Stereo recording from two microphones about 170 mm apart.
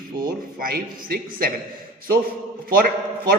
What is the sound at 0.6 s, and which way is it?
Speech, 60° right (ahead or behind).